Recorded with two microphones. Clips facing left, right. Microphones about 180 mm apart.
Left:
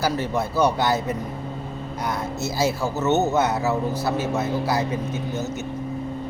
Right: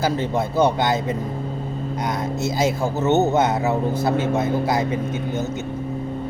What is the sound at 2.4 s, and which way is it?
Speech, 20° right (ahead or behind).